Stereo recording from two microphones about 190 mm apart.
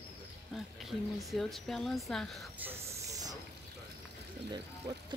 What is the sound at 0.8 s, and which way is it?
A woman's voice, centre (ahead or behind).